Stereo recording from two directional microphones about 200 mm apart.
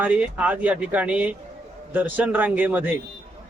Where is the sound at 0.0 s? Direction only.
5° right (ahead or behind).